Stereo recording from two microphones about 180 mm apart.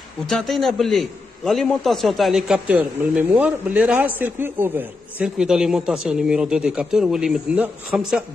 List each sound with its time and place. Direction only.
0.3 s a man's voice: centre (ahead or behind)